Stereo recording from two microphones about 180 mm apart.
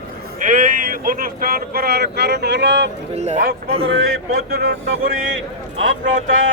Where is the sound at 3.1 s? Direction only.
40° right (ahead or behind).